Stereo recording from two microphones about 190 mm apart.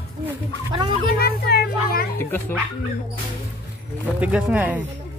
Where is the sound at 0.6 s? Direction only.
25° right (ahead or behind).